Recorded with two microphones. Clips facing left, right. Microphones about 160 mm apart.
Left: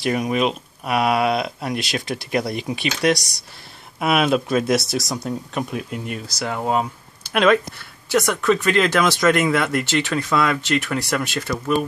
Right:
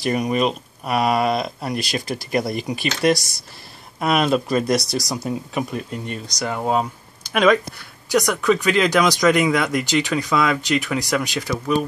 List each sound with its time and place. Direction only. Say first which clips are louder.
0.0 s speech: even; centre (ahead or behind)
4.0 s speech: even; 5° left (ahead or behind)